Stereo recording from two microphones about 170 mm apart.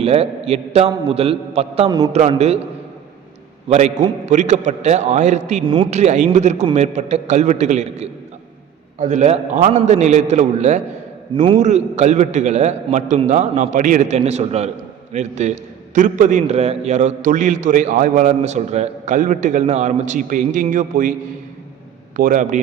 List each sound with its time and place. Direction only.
0.0 s a man's voice: 35° right (ahead or behind)
3.7 s a man's voice: 40° right (ahead or behind)
5.6 s speech: 30° right (ahead or behind)
5.9 s a man's voice: 40° right (ahead or behind)